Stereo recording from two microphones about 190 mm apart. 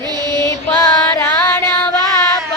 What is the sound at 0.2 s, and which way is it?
Mantra, 20° right (ahead or behind).